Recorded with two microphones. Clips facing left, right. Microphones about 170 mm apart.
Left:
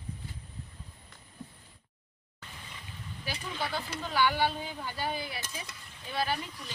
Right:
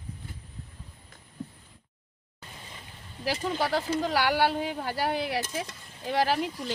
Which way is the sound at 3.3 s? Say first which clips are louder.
Right 8 dB; 90° right.